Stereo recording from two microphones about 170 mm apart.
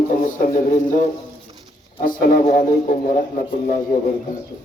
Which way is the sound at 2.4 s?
45° left (ahead or behind).